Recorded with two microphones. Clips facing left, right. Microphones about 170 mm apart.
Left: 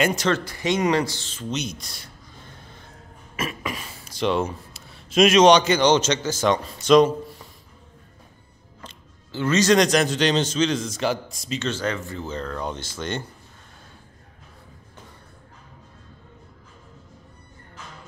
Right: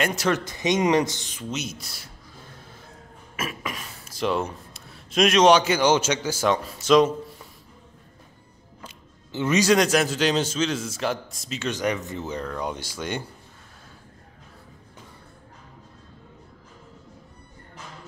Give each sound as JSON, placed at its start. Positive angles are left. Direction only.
{"t": 0.0, "sound": "a man's voice", "side_deg": 0}
{"t": 0.3, "sound": "speech", "side_deg": -20}
{"t": 3.3, "sound": "speech", "side_deg": 0}
{"t": 9.3, "sound": "a man's voice", "side_deg": -15}
{"t": 11.7, "sound": "speech", "side_deg": -15}